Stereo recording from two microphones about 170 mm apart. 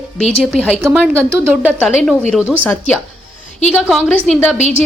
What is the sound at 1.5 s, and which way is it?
Speech, 10° right (ahead or behind).